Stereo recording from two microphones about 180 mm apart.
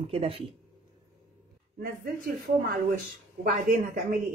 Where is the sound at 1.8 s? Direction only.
55° right (ahead or behind).